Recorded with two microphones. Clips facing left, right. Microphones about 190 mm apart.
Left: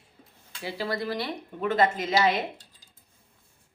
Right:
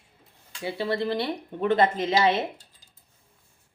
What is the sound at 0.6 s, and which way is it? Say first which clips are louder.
Speech: right 4 dB; 25° right (ahead or behind).